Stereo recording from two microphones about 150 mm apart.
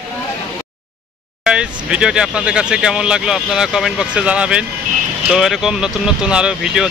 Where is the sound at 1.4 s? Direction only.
5° right (ahead or behind).